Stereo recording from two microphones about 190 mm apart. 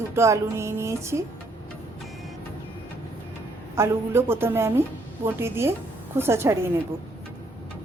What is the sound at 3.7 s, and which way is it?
Speech, 15° right (ahead or behind).